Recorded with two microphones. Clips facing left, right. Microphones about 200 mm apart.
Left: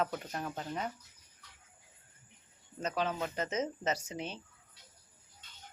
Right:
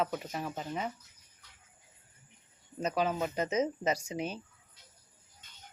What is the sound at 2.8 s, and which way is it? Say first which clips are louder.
Speech: right 3 dB; 10° right (ahead or behind).